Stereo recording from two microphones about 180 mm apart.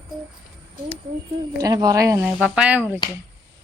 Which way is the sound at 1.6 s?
20° right (ahead or behind).